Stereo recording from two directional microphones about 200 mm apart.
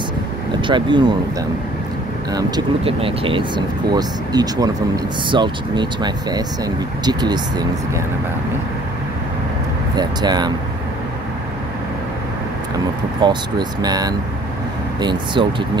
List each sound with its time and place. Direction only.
0.6 s speech: 25° right (ahead or behind)
2.3 s speech: 25° right (ahead or behind)
9.9 s speech: 20° right (ahead or behind)
12.7 s speech: 20° right (ahead or behind)